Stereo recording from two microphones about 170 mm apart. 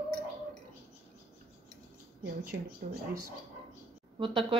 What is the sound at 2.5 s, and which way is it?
Speech, 90° right.